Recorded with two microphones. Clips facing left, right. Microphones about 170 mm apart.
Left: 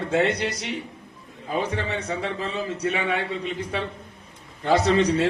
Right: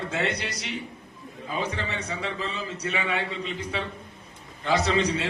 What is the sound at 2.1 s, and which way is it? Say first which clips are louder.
A man's voice: left 4 dB; 50° left (ahead or behind).